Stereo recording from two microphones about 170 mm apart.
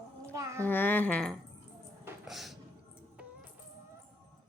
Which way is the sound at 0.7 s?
10° left (ahead or behind).